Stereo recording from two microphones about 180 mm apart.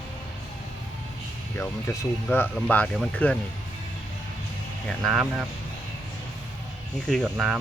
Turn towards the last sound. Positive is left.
turn(degrees=0)  # may be behind; listen again after turning